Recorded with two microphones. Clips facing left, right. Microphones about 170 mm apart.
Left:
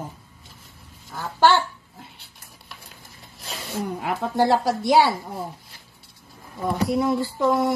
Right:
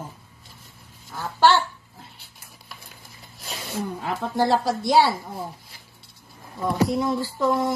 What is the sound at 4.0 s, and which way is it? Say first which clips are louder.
A woman's voice: left 2 dB; 15° left (ahead or behind).